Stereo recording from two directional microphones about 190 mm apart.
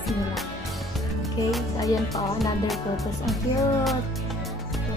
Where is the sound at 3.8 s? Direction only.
Centre (ahead or behind).